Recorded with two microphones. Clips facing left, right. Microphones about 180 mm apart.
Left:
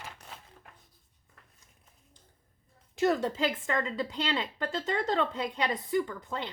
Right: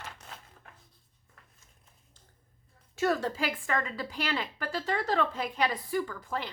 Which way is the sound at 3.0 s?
20° left (ahead or behind).